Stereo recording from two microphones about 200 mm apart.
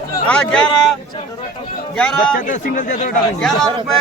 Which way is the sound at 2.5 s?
40° left (ahead or behind).